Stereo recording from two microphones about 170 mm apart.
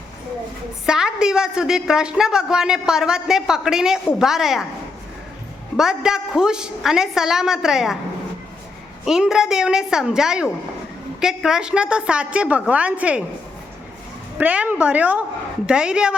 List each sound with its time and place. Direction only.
0.9 s a woman's voice: 5° right (ahead or behind)
5.7 s a woman's voice: 5° right (ahead or behind)
9.0 s a woman's voice: 5° right (ahead or behind)
14.3 s a woman's voice: 10° right (ahead or behind)